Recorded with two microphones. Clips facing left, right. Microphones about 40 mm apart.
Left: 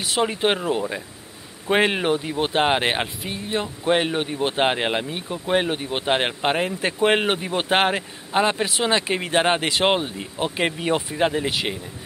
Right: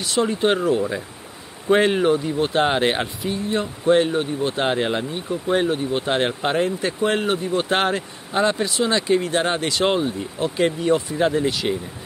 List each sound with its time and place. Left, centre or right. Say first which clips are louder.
0.0 s speech: right 2 dB; left
1.7 s speech: right 3 dB; left
7.7 s speech: left 5 dB; left